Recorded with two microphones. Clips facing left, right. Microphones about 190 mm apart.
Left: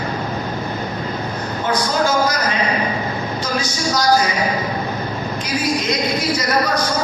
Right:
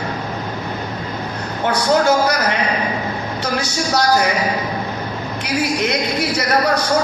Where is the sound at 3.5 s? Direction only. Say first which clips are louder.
Right 2 dB; 65° right (ahead or behind).